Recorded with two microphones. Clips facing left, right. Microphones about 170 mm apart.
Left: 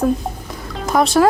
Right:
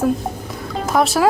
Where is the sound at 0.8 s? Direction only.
Centre (ahead or behind).